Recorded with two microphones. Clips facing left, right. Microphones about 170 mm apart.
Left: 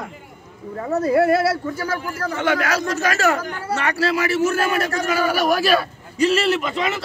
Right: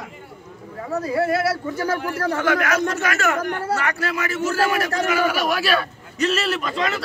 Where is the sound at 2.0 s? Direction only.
65° right (ahead or behind).